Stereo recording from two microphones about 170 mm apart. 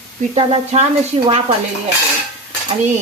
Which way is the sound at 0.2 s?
40° right (ahead or behind).